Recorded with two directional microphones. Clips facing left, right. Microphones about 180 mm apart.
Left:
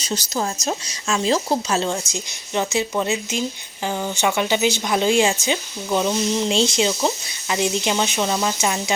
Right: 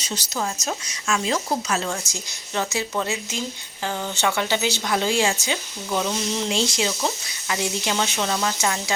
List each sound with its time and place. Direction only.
0.0 s speech: 40° left (ahead or behind); by 8.8 s 15° left (ahead or behind)